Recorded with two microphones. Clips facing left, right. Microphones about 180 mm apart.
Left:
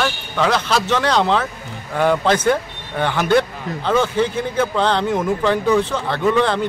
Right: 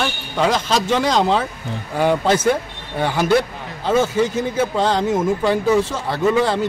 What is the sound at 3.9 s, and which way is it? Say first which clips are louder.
Speech: right 1 dB; 5° right (ahead or behind).